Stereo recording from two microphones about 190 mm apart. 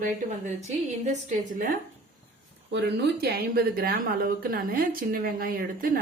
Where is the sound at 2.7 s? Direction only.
60° right (ahead or behind).